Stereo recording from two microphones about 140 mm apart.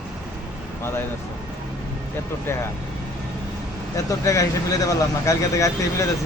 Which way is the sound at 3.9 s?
25° left (ahead or behind).